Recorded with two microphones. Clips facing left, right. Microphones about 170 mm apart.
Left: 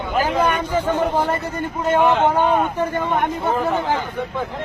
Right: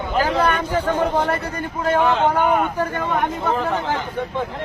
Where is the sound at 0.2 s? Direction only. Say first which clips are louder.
Even; 10° left (ahead or behind).